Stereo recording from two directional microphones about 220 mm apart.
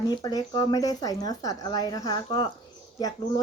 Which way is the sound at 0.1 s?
20° left (ahead or behind).